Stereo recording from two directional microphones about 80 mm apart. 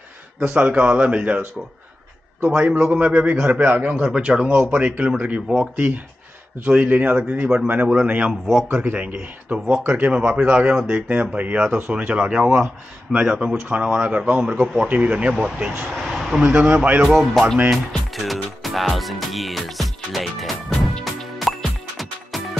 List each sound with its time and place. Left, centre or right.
0.5 s speech: centre
2.5 s speech: centre
6.7 s speech: centre
8.3 s a man's voice: centre
8.6 s a man's voice: centre
14.4 s speech: centre
15.8 s a sound: centre
16.4 s speech: centre
17.1 s a man's voice: centre
17.6 s music: centre